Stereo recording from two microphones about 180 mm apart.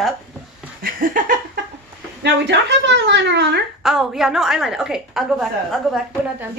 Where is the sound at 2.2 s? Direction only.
75° right (ahead or behind).